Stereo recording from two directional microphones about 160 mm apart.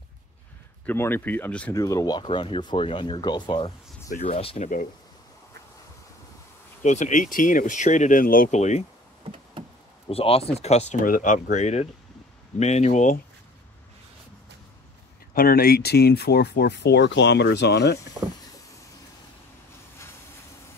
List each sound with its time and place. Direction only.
0.8 s speech: 15° left (ahead or behind)
1.7 s speech: 20° left (ahead or behind); by 4.6 s 40° left (ahead or behind)
6.8 s speech: 50° left (ahead or behind)
9.2 s a sound: 35° right (ahead or behind)
10.0 s speech: 35° left (ahead or behind)
11.1 s speech: 55° left (ahead or behind)
15.3 s speech: 65° left (ahead or behind); by 18.1 s 90° left